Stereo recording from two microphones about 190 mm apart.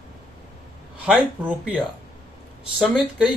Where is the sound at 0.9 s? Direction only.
5° right (ahead or behind).